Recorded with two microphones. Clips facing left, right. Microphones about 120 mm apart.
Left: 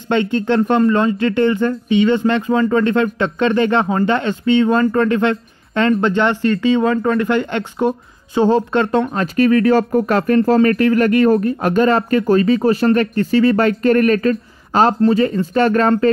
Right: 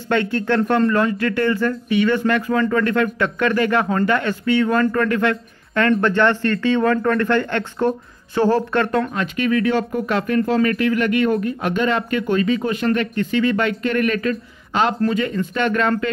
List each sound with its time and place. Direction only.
0.1 s speech: 20° left (ahead or behind)
9.1 s speech: 40° left (ahead or behind)